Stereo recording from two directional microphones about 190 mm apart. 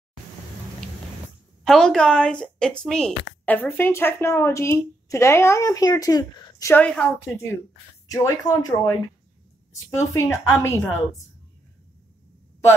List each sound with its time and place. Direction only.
1.6 s a woman's voice: centre (ahead or behind)
8.1 s a woman's voice: 15° left (ahead or behind)